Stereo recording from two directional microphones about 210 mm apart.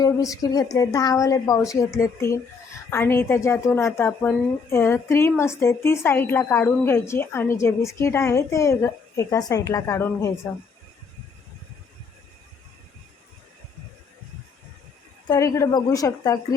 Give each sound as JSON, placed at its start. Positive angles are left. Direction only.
{"t": 0.0, "sound": "a woman's voice", "side_deg": 15}
{"t": 15.3, "sound": "a woman's voice", "side_deg": 15}